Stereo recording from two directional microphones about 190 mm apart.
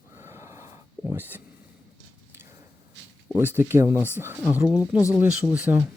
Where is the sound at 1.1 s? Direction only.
10° right (ahead or behind).